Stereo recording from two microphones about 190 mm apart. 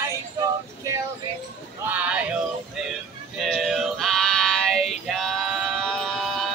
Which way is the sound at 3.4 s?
Centre (ahead or behind).